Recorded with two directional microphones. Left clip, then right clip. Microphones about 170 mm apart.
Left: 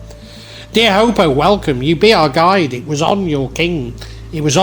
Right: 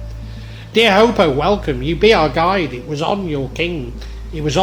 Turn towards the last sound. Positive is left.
turn(degrees=45)  # may be behind; listen again after turning